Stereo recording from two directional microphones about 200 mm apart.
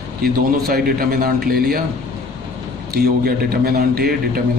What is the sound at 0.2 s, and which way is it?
A man's voice, 50° right (ahead or behind).